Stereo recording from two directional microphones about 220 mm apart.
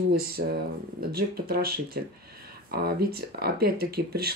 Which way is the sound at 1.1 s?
45° right (ahead or behind).